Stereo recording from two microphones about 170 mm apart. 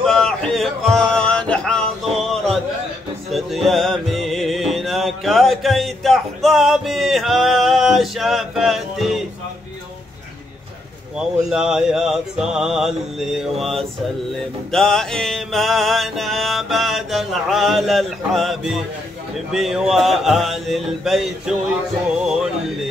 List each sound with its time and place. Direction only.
0.0 s male singing: 5° left (ahead or behind)
3.3 s music: centre (ahead or behind)
11.1 s music: 5° right (ahead or behind)